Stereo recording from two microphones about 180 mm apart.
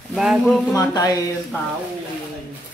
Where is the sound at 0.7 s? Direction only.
20° left (ahead or behind).